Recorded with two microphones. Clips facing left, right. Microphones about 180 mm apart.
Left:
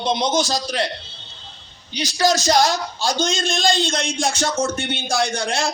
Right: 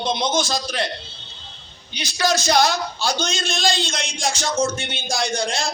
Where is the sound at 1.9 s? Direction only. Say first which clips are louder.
Left 3 dB; 40° left (ahead or behind).